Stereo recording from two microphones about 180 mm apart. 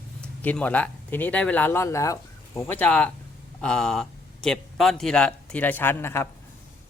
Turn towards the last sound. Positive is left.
turn(degrees=15)  # may be behind; listen again after turning